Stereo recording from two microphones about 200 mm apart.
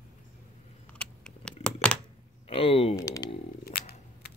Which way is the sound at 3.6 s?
50° left (ahead or behind).